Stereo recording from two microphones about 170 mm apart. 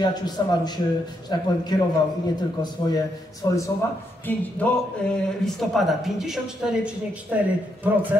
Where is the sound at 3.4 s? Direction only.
25° left (ahead or behind).